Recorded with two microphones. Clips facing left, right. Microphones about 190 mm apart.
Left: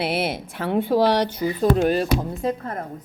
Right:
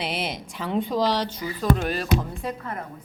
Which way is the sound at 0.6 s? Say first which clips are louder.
Left 5 dB; 55° left (ahead or behind).